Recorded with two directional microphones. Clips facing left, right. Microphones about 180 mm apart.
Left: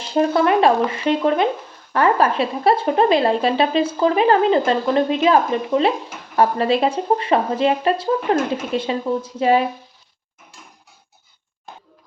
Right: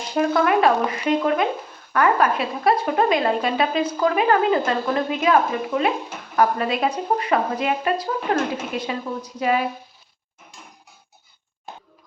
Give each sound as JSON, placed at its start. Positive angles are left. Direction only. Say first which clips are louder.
{"t": 0.1, "sound": "speech", "louder": "left 3 dB", "side_deg": 25}